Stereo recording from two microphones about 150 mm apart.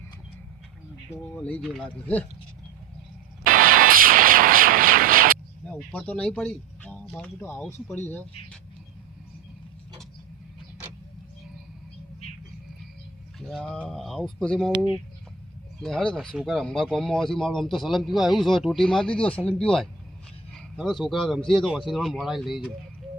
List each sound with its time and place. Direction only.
1.4 s speech: 10° left (ahead or behind)
3.4 s vehicle: 70° right (ahead or behind)
5.6 s speech: 10° left (ahead or behind)
13.4 s speech: 5° left (ahead or behind)
15.8 s speech: 5° left (ahead or behind)